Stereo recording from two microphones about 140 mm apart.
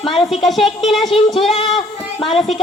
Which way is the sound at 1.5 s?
40° left (ahead or behind).